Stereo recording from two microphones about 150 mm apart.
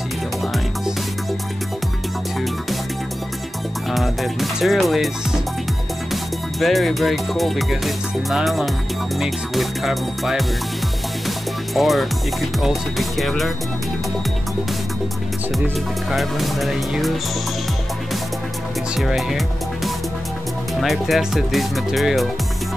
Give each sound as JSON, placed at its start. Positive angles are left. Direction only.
{"t": 3.9, "sound": "music", "side_deg": 0}
{"t": 6.6, "sound": "speech", "side_deg": 0}
{"t": 16.1, "sound": "speech", "side_deg": 0}
{"t": 18.9, "sound": "speech", "side_deg": 0}